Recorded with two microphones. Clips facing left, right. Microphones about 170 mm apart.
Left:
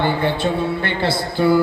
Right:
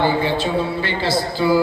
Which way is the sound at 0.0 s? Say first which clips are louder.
Even; 55° left (ahead or behind).